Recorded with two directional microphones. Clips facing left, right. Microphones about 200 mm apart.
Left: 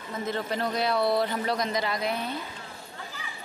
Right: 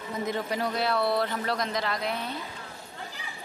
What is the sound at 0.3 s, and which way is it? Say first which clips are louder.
Speech: left 1 dB; 10° right (ahead or behind).